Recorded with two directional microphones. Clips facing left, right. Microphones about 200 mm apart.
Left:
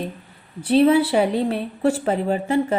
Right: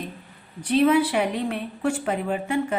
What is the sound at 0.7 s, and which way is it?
A woman's voice, 30° left (ahead or behind).